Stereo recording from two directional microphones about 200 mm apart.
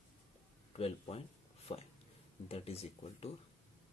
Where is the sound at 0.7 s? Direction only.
30° left (ahead or behind).